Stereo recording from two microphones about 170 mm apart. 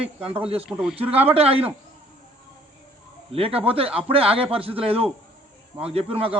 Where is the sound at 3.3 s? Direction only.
35° right (ahead or behind).